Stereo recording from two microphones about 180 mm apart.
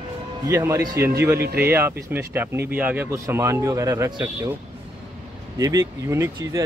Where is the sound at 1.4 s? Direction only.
60° right (ahead or behind).